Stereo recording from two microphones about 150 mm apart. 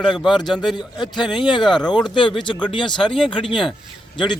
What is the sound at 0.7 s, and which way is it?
Speech, 30° left (ahead or behind).